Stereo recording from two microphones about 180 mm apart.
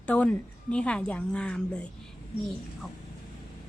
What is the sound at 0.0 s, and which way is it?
Speech, 5° left (ahead or behind).